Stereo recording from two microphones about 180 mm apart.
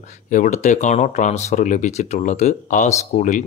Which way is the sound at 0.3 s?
45° left (ahead or behind).